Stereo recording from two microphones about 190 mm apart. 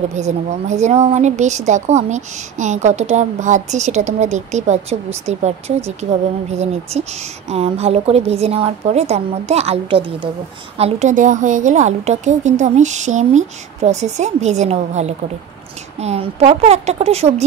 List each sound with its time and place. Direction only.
0.1 s a woman's voice: 35° right (ahead or behind)